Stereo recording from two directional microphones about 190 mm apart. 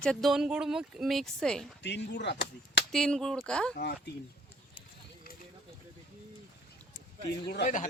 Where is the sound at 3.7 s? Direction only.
60° left (ahead or behind).